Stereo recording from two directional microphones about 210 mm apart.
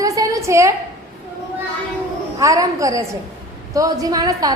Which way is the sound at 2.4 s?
15° right (ahead or behind).